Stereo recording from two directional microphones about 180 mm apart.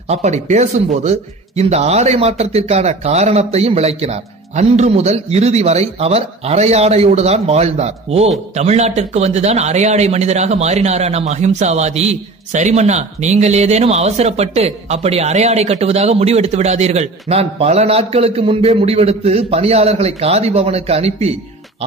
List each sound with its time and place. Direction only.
0.1 s a man's voice: 40° right (ahead or behind)